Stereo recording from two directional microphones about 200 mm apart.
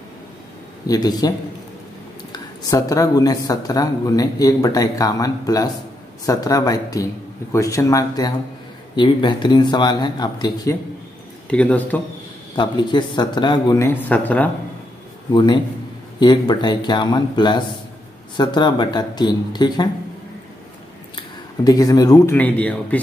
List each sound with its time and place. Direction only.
0.8 s speech: 20° left (ahead or behind)
2.3 s speech: 15° left (ahead or behind)
11.5 s speech: 5° left (ahead or behind)
12.5 s speech: 20° left (ahead or behind)
15.3 s speech: 20° left (ahead or behind)
21.6 s speech: 20° left (ahead or behind)